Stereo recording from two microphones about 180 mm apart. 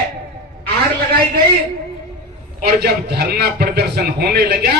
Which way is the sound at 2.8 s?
60° right (ahead or behind).